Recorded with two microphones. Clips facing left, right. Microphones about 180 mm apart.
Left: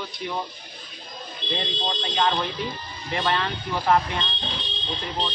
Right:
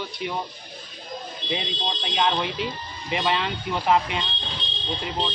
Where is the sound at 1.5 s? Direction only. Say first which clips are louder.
Even; 10° right (ahead or behind).